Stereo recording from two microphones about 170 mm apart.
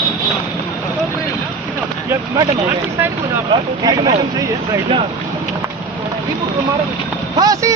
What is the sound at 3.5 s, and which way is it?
Speech, 25° right (ahead or behind).